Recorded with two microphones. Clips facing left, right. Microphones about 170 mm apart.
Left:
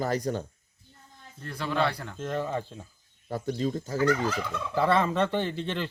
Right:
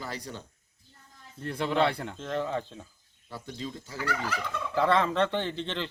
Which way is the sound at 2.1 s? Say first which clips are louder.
Left 1 dB; 10° left (ahead or behind).